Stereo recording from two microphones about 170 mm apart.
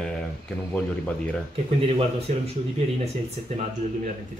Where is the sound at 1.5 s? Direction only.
35° right (ahead or behind).